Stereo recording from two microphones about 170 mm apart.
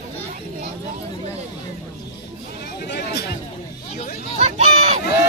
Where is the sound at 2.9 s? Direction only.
75° left (ahead or behind).